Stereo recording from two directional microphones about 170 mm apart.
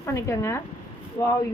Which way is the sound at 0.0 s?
15° left (ahead or behind).